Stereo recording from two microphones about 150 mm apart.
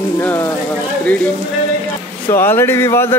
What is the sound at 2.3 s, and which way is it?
Speech, 15° left (ahead or behind).